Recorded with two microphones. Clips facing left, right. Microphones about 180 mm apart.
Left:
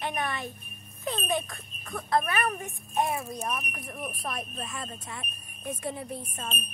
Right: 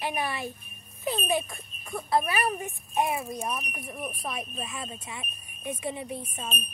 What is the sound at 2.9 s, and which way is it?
Speech, centre (ahead or behind).